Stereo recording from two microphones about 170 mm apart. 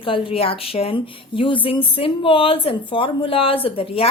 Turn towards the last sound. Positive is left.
turn(degrees=30)  # may be behind; listen again after turning